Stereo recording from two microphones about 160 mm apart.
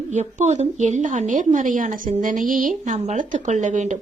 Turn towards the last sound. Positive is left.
turn(degrees=-50)  # may be behind; listen again after turning